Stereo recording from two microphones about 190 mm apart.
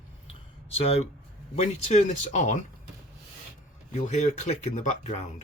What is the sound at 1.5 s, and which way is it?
Speech, 35° left (ahead or behind).